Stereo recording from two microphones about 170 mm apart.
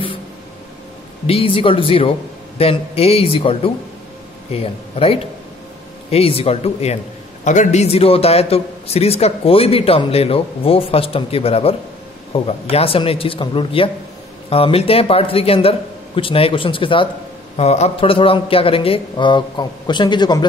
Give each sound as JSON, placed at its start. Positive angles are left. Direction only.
{"t": 1.2, "sound": "a man's voice", "side_deg": 35}